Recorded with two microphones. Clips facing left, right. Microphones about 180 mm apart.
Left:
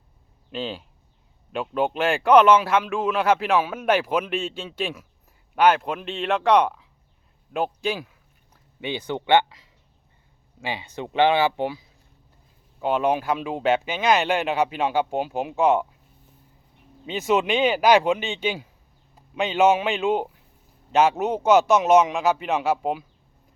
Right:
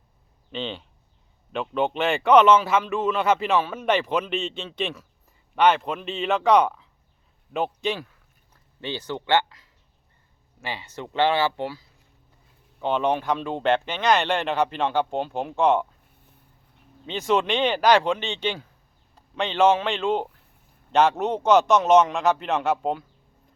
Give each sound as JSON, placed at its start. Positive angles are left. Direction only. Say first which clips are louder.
{"t": 0.5, "sound": "speech", "louder": "left 1 dB", "side_deg": 5}
{"t": 8.8, "sound": "speech", "louder": "left 2 dB", "side_deg": 15}
{"t": 12.8, "sound": "speech", "louder": "left 1 dB", "side_deg": 5}
{"t": 17.1, "sound": "a man's voice", "louder": "left 1 dB", "side_deg": 5}